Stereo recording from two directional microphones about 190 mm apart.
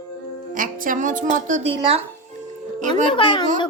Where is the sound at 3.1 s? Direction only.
25° left (ahead or behind).